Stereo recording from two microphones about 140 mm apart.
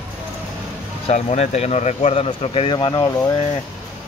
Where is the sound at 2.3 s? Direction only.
40° left (ahead or behind).